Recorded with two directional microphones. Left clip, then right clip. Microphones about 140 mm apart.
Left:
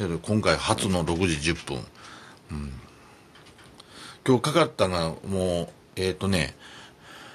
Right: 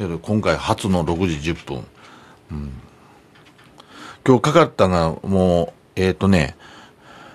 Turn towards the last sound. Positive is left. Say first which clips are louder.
# right 3 dB
turn(degrees=-30)  # may be behind; listen again after turning